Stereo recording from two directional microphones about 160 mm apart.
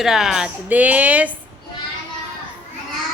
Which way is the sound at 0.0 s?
Centre (ahead or behind).